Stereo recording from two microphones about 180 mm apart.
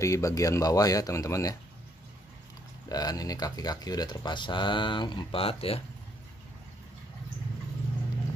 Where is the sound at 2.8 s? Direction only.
20° left (ahead or behind).